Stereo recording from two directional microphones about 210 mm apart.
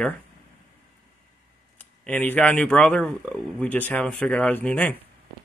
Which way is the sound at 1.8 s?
10° left (ahead or behind).